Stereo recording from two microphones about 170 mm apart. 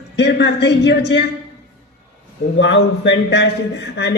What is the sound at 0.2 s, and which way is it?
Speech, 90° left.